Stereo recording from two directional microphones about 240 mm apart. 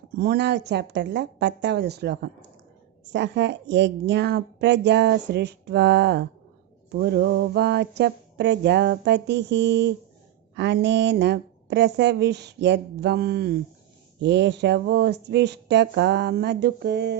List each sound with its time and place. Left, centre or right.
0.2 s a woman's voice: right